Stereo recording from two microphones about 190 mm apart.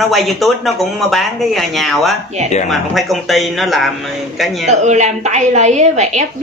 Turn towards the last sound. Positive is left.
turn(degrees=-40)  # may be behind; listen again after turning